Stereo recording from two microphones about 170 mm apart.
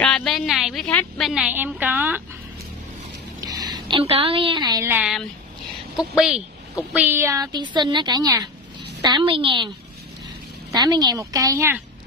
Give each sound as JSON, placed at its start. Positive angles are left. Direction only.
{"t": 0.0, "sound": "a sound", "side_deg": 5}
{"t": 0.8, "sound": "a woman's voice", "side_deg": 5}
{"t": 3.3, "sound": "a sound", "side_deg": -20}
{"t": 4.0, "sound": "a woman's voice", "side_deg": -35}
{"t": 4.8, "sound": "a woman's voice", "side_deg": -10}
{"t": 10.7, "sound": "a woman's voice", "side_deg": -25}